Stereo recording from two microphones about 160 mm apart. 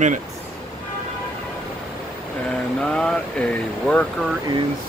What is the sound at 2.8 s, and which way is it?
Speech, 5° left (ahead or behind).